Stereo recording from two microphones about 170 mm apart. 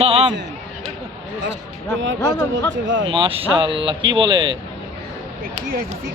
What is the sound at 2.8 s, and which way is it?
Speech, 90° right.